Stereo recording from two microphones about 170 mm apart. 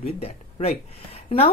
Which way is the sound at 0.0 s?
35° left (ahead or behind).